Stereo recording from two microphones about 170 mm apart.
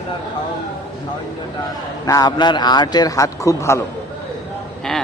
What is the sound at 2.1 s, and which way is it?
A man's voice, 25° left (ahead or behind).